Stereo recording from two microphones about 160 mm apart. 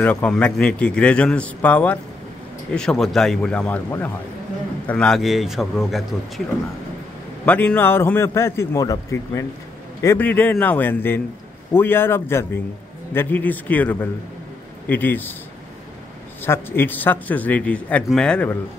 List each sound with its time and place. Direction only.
0.0 s a man's voice: 10° left (ahead or behind)
4.8 s a man's voice: 5° left (ahead or behind)
7.4 s a man's voice: 10° left (ahead or behind)
10.0 s a man's voice: 10° left (ahead or behind)
16.4 s a man's voice: 15° left (ahead or behind)